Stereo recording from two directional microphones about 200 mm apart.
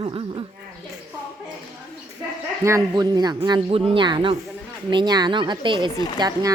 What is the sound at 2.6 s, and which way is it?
Speech, 15° right (ahead or behind).